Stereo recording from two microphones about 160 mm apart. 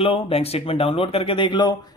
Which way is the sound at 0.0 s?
35° left (ahead or behind).